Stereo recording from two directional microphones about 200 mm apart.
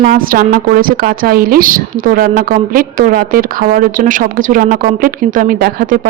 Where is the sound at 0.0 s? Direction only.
45° right (ahead or behind).